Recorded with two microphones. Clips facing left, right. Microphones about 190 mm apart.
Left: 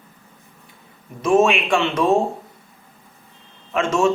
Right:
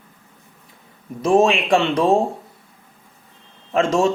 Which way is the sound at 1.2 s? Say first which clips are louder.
Right 1 dB; 35° right (ahead or behind).